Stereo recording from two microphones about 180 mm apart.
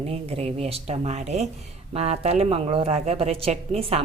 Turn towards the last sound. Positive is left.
turn(degrees=-35)  # may be behind; listen again after turning